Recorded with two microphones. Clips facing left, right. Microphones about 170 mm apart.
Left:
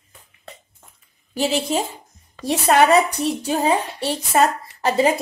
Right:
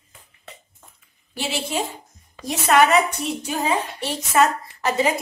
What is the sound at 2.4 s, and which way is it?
A woman's voice, 30° left (ahead or behind).